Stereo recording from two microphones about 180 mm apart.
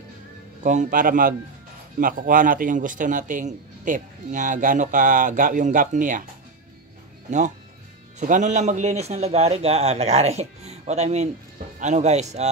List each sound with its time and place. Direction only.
0.7 s a man's voice: 45° right (ahead or behind)
7.2 s a man's voice: 45° right (ahead or behind)